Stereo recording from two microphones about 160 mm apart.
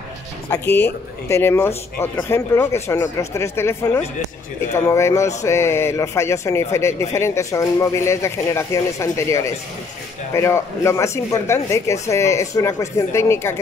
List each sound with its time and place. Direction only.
0.5 s speech: 15° left (ahead or behind)